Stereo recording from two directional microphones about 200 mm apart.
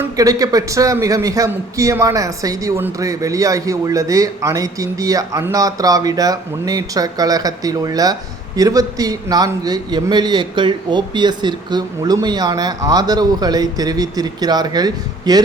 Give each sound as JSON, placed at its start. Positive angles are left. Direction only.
{"t": 0.2, "sound": "a man's voice", "side_deg": -20}